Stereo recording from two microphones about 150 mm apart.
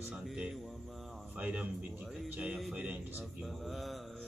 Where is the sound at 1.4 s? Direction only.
10° right (ahead or behind).